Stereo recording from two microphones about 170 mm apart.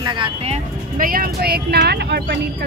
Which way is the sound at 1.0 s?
60° right (ahead or behind).